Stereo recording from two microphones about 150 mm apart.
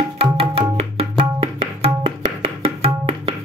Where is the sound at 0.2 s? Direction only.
40° right (ahead or behind).